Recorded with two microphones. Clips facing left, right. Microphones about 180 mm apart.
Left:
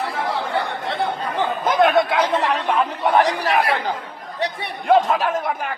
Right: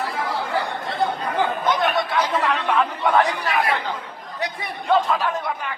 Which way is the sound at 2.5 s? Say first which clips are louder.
Left 1 dB; 40° left (ahead or behind).